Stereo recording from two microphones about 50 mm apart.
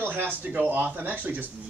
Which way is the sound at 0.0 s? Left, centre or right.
Right.